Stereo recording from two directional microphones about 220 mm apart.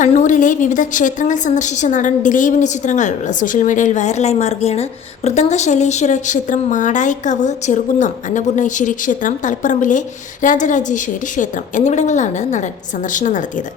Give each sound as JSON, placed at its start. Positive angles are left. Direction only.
{"t": 0.0, "sound": "a woman's voice", "side_deg": 35}